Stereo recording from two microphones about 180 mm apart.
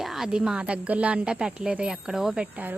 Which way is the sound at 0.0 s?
Centre (ahead or behind).